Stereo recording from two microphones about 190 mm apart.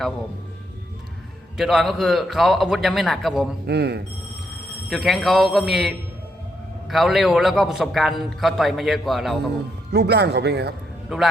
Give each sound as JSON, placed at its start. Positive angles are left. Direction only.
{"t": 1.5, "sound": "a man's voice", "side_deg": 0}
{"t": 3.7, "sound": "speech", "side_deg": -60}
{"t": 4.9, "sound": "a man's voice", "side_deg": 0}
{"t": 9.9, "sound": "speech", "side_deg": -60}